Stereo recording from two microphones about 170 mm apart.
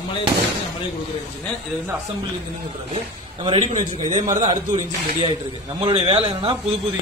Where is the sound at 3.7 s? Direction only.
45° right (ahead or behind).